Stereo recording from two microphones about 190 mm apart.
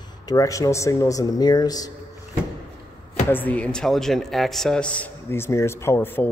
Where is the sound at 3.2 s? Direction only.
10° left (ahead or behind).